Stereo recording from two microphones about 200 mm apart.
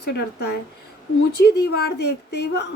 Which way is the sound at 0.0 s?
55° left (ahead or behind).